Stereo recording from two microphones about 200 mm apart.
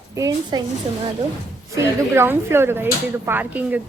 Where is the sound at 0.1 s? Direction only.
15° right (ahead or behind).